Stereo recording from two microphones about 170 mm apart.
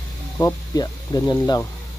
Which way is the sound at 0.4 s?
15° left (ahead or behind).